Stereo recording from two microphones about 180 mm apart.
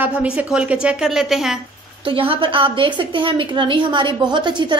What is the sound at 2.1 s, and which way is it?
A woman's voice, 30° right (ahead or behind).